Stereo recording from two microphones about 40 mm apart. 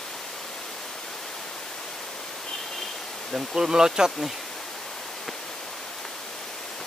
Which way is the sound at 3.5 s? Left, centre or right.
Centre.